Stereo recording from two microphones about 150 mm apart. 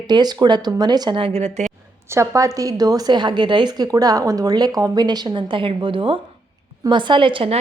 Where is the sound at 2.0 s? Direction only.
20° right (ahead or behind).